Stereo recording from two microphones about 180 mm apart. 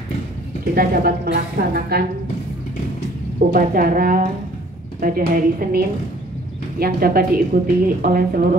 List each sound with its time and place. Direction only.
0.7 s a woman's voice: 55° right (ahead or behind)
3.5 s speech: 50° right (ahead or behind)